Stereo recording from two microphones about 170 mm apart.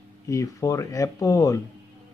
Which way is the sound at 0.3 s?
20° left (ahead or behind).